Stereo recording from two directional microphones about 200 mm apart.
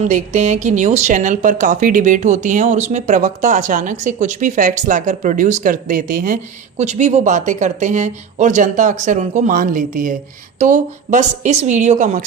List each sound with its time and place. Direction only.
0.0 s speech: 35° right (ahead or behind)